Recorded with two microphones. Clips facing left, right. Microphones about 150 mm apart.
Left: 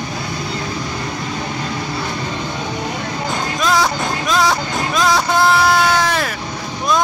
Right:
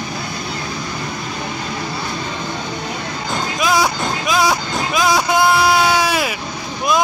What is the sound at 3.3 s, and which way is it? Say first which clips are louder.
Music: right 1 dB; 10° right (ahead or behind).